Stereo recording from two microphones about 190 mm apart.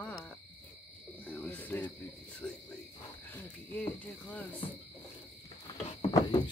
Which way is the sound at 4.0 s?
10° left (ahead or behind).